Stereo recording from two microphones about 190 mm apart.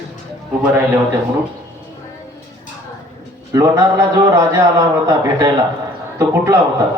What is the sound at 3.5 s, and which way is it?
A man's voice, 20° right (ahead or behind).